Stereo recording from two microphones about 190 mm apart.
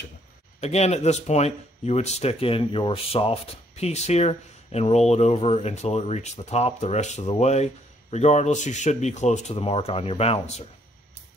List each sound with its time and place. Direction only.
0.6 s speech: 35° left (ahead or behind)